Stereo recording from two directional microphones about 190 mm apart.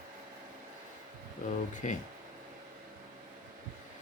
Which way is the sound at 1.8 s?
40° left (ahead or behind).